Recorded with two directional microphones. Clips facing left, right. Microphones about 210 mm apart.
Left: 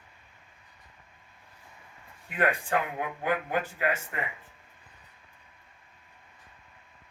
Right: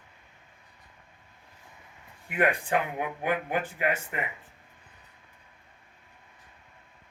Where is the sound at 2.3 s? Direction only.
15° right (ahead or behind).